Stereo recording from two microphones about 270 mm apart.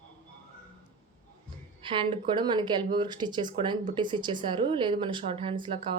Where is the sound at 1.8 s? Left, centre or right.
Centre.